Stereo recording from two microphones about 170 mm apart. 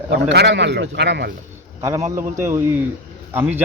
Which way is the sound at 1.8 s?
15° right (ahead or behind).